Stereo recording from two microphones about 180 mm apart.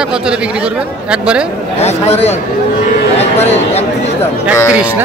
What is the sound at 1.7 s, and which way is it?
Speech, 35° left (ahead or behind).